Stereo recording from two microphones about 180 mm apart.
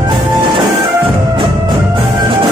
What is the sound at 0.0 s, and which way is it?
Music, 25° right (ahead or behind).